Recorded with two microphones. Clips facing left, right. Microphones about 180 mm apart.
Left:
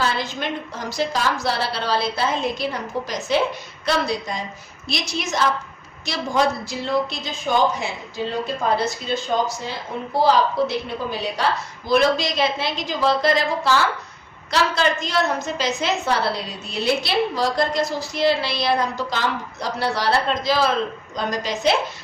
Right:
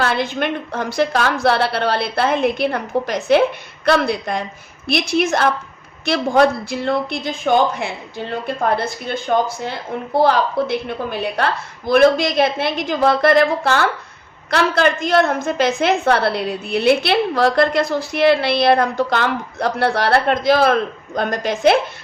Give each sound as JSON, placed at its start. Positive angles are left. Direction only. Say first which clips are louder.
{"t": 0.0, "sound": "a woman's voice", "louder": "right 5 dB", "side_deg": -60}